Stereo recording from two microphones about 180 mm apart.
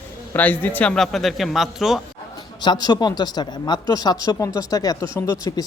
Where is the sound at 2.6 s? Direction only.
25° left (ahead or behind).